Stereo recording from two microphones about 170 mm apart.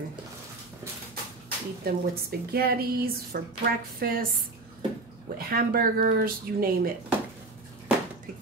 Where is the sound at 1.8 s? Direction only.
65° right (ahead or behind).